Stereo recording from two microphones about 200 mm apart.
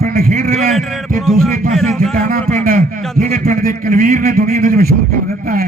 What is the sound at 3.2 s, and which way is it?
A man's voice, 45° right (ahead or behind).